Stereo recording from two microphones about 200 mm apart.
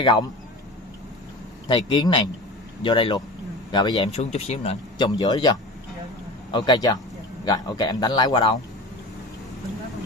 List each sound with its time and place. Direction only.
1.7 s speech: 20° left (ahead or behind)
4.1 s speech: 35° left (ahead or behind)